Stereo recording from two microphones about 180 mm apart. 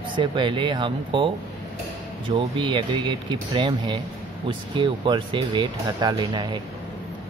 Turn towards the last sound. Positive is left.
turn(degrees=-25)  # may be behind; listen again after turning